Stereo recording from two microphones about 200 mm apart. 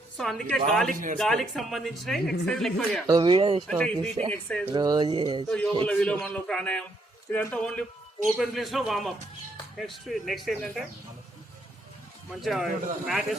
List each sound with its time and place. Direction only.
0.2 s a man's voice: centre (ahead or behind)
0.9 s speech: 40° right (ahead or behind)
1.2 s a man's voice: centre (ahead or behind)
3.1 s speech: 20° right (ahead or behind)
3.7 s a man's voice: 5° left (ahead or behind)
4.7 s speech: 20° right (ahead or behind)
5.5 s a man's voice: 5° left (ahead or behind)
12.3 s a man's voice: centre (ahead or behind)